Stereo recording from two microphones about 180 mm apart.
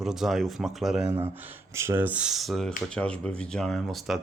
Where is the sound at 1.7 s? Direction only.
15° right (ahead or behind).